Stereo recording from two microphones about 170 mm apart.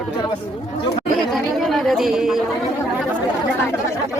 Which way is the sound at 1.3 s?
Centre (ahead or behind).